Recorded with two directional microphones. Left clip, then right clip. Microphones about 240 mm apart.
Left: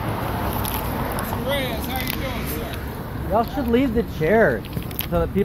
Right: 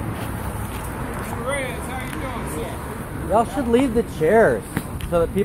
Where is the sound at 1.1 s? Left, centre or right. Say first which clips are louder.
Right 1 dB; left.